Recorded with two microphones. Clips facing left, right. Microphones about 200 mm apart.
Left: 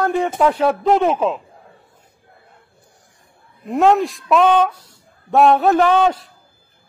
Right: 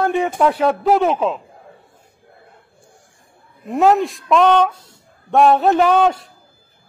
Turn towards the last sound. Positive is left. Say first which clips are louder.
# even
turn(degrees=0)  # may be behind; listen again after turning